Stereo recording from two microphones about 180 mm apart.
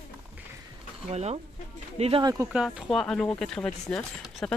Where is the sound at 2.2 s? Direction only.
15° right (ahead or behind).